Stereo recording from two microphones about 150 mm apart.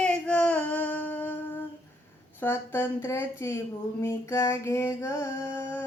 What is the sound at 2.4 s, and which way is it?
Female singing, 15° left (ahead or behind).